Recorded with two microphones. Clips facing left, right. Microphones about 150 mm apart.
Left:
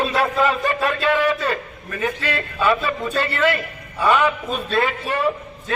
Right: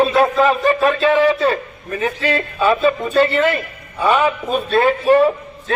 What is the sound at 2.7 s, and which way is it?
Speech, 35° right (ahead or behind).